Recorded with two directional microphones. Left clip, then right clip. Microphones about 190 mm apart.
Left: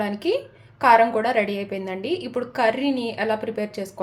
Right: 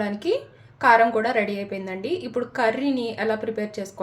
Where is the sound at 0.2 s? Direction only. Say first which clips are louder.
Left 1 dB; 5° left (ahead or behind).